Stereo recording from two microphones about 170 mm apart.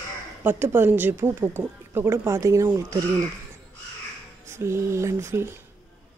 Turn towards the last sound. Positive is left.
turn(degrees=-15)  # may be behind; listen again after turning